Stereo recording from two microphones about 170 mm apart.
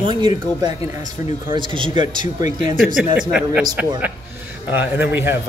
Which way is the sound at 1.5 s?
30° right (ahead or behind).